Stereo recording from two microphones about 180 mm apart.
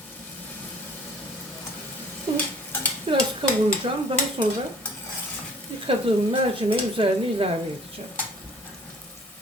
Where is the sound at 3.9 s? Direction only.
30° right (ahead or behind).